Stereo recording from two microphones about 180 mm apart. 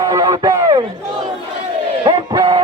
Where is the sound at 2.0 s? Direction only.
25° right (ahead or behind).